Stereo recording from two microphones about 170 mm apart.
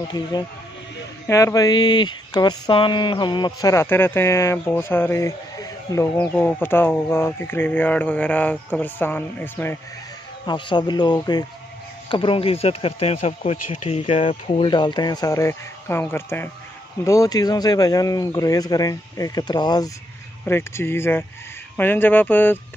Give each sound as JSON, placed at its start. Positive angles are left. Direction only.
{"t": 0.1, "sound": "speech", "side_deg": 25}
{"t": 10.4, "sound": "speech", "side_deg": 25}
{"t": 14.5, "sound": "speech", "side_deg": 30}